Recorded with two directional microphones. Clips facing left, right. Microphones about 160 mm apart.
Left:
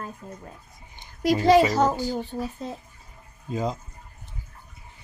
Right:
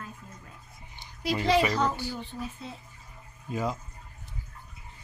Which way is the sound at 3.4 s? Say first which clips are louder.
Left 3 dB; 25° left (ahead or behind).